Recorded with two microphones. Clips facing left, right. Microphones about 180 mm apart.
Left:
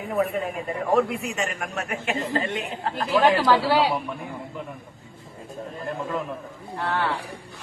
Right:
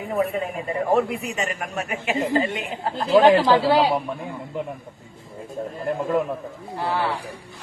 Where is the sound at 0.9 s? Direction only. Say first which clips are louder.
Even; centre (ahead or behind).